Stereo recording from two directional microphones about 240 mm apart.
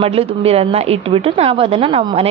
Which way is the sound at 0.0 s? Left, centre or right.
Right.